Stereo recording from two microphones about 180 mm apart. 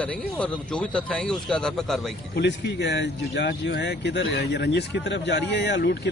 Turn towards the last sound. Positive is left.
turn(degrees=75)  # may be behind; listen again after turning